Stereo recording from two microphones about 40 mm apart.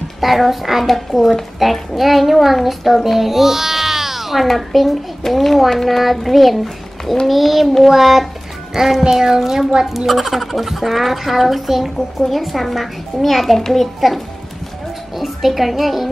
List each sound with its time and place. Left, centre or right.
0.2 s a child's voice: centre